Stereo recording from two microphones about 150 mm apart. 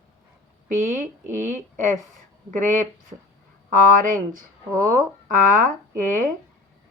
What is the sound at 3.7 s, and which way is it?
Speech, 65° right (ahead or behind).